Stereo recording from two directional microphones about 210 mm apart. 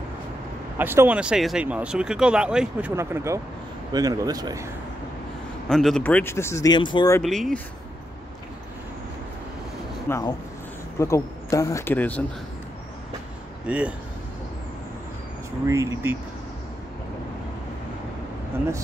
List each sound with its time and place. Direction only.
0.7 s speech: 10° right (ahead or behind)
5.7 s speech: centre (ahead or behind); by 7.2 s 20° left (ahead or behind)
7.2 s speech: centre (ahead or behind)
10.0 s speech: 15° left (ahead or behind)
13.7 s speech: 5° right (ahead or behind)
15.6 s speech: 15° right (ahead or behind)